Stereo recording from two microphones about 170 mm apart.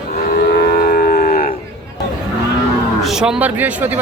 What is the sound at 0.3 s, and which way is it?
Livestock, 65° left (ahead or behind).